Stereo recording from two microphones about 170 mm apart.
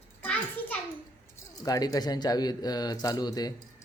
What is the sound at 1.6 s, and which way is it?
Speech, 20° left (ahead or behind).